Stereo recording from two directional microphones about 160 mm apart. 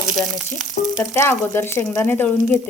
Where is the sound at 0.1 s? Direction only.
Centre (ahead or behind).